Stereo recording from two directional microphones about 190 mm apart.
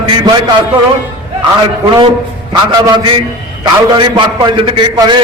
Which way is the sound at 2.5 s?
25° right (ahead or behind).